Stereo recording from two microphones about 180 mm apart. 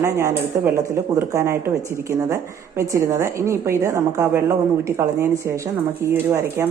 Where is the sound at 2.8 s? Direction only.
15° right (ahead or behind).